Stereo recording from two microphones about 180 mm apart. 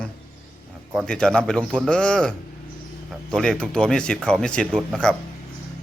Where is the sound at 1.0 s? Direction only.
5° left (ahead or behind).